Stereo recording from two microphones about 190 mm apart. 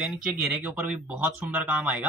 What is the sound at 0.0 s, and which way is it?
Speech, 5° right (ahead or behind).